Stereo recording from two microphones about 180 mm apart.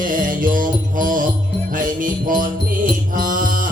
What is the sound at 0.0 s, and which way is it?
Music, 50° right (ahead or behind).